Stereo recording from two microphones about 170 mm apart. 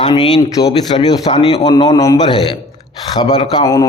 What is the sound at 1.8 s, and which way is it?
A man's voice, 20° left (ahead or behind).